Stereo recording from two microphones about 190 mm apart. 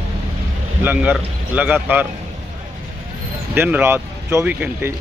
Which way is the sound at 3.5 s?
10° right (ahead or behind).